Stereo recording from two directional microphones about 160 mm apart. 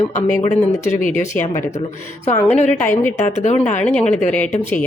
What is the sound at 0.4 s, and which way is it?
Speech, 50° left (ahead or behind).